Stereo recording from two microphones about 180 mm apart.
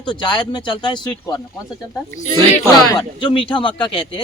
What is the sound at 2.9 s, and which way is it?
Speech, 25° left (ahead or behind).